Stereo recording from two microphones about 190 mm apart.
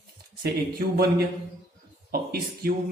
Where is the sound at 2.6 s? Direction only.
50° right (ahead or behind).